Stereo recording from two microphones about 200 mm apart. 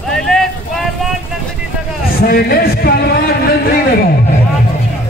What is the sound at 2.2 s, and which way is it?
Speech, 50° left (ahead or behind).